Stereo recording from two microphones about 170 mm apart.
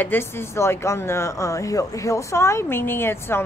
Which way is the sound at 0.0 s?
15° left (ahead or behind).